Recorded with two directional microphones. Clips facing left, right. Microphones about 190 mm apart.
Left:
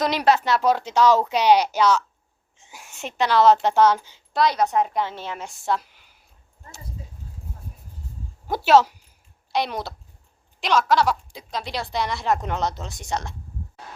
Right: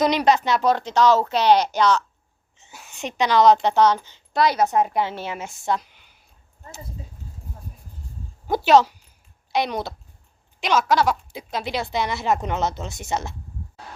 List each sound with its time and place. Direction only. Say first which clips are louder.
0.0 s a woman's voice: right 2 dB; 5° left (ahead or behind)
4.4 s speech: right 1 dB; 5° right (ahead or behind)
8.4 s speech: right 1 dB; centre (ahead or behind)